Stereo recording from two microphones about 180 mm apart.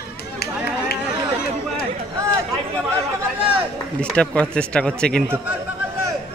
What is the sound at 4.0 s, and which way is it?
Speech, 5° left (ahead or behind).